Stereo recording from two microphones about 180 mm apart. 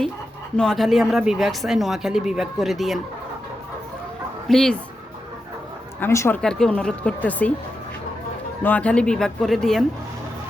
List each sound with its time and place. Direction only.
0.5 s speech: 5° left (ahead or behind)
4.4 s speech: 5° left (ahead or behind)
6.0 s a woman's voice: 15° left (ahead or behind)
8.6 s speech: 10° left (ahead or behind)